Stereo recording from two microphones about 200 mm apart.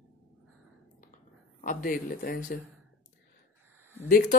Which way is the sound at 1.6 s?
45° left (ahead or behind).